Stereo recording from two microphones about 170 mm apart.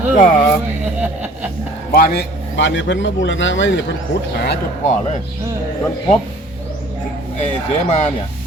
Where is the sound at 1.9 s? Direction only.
65° left (ahead or behind); by 3.8 s 90° left.